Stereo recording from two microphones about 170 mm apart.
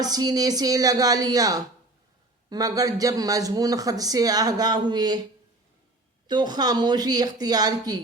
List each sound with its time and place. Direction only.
0.0 s speech: 25° right (ahead or behind)
6.2 s speech: 25° right (ahead or behind)